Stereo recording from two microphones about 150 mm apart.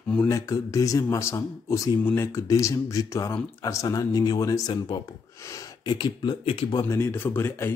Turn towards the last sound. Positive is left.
turn(degrees=15)  # may be behind; listen again after turning